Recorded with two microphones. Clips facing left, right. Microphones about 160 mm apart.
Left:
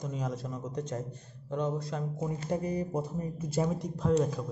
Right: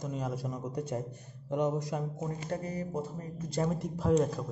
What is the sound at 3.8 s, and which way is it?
Speech, 5° right (ahead or behind).